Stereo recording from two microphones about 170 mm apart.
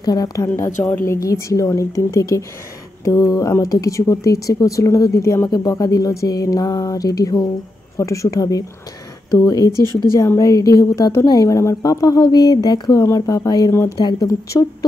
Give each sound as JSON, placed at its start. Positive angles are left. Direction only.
{"t": 0.0, "sound": "a woman's voice", "side_deg": 25}